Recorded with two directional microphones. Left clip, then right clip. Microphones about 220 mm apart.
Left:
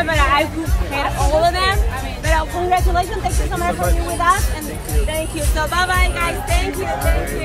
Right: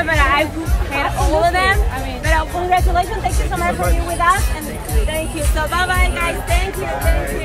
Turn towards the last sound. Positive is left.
turn(degrees=10)  # may be behind; listen again after turning